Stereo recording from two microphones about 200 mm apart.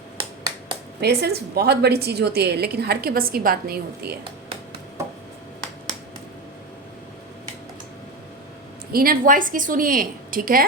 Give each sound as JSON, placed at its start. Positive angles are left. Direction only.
{"t": 0.2, "sound": "finger snapping", "side_deg": -25}
{"t": 1.0, "sound": "a woman's voice", "side_deg": -55}
{"t": 8.9, "sound": "a woman's voice", "side_deg": -45}